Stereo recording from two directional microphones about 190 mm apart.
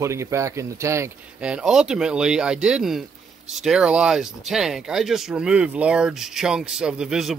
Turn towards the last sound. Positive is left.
turn(degrees=0)  # may be behind; listen again after turning